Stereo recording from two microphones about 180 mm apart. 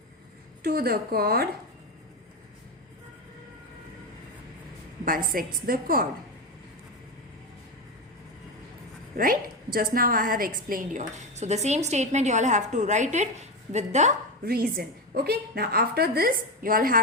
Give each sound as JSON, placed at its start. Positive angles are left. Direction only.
{"t": 0.6, "sound": "a woman's voice", "side_deg": -55}
{"t": 5.0, "sound": "a woman's voice", "side_deg": -50}
{"t": 9.1, "sound": "a woman's voice", "side_deg": -50}
{"t": 14.4, "sound": "a woman's voice", "side_deg": -55}